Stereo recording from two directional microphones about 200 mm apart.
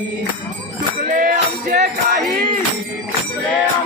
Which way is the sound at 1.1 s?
40° right (ahead or behind).